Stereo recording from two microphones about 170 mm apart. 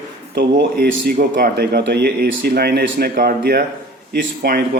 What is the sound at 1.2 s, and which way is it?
A man's voice, 60° right (ahead or behind).